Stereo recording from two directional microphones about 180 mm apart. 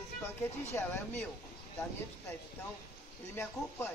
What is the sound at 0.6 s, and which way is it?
Speech, 10° left (ahead or behind).